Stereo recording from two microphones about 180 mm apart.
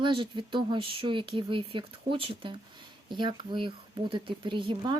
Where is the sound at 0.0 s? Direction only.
25° right (ahead or behind).